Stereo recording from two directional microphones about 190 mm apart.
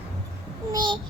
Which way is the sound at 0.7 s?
25° right (ahead or behind).